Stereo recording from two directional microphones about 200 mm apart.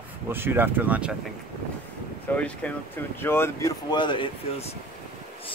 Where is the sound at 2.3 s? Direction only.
10° left (ahead or behind).